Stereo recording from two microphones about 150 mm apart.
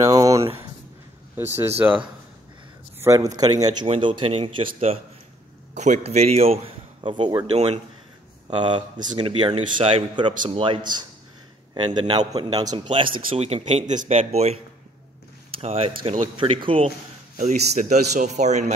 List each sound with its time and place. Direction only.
0.0 s a sound: 20° right (ahead or behind)
1.3 s speech: 15° right (ahead or behind)
3.0 s a man's voice: 20° right (ahead or behind); by 4.9 s 40° right (ahead or behind)
5.8 s a man's voice: 50° right (ahead or behind); by 7.4 s 30° right (ahead or behind)
7.5 s speech: 45° right (ahead or behind)
8.5 s a man's voice: 35° right (ahead or behind)
15.6 s a man's voice: 45° right (ahead or behind)
17.4 s speech: 55° right (ahead or behind)